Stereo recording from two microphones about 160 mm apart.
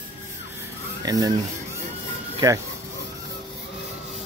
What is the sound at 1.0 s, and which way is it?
Speech, 25° right (ahead or behind).